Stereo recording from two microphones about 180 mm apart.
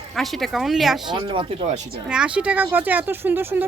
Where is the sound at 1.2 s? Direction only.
25° right (ahead or behind).